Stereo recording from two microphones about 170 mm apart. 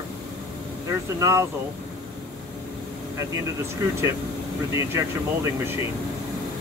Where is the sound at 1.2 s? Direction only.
20° right (ahead or behind).